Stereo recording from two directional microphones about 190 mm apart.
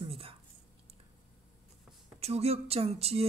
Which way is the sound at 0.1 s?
30° right (ahead or behind).